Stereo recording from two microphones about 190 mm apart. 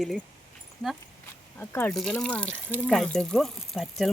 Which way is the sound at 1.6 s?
10° left (ahead or behind).